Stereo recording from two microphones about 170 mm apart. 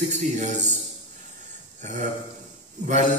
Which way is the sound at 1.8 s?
45° right (ahead or behind).